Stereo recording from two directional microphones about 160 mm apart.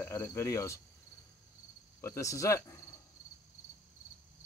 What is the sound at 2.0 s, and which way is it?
Speech, 20° left (ahead or behind).